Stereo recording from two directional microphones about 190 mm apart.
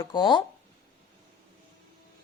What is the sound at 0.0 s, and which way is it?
Speech, 20° left (ahead or behind).